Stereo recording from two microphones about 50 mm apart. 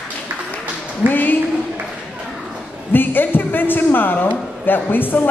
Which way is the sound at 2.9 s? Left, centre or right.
Left.